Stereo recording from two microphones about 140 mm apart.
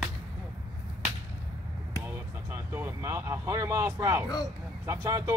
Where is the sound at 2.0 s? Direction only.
15° right (ahead or behind).